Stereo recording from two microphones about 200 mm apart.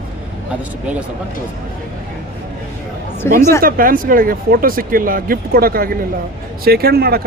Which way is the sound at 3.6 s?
45° right (ahead or behind).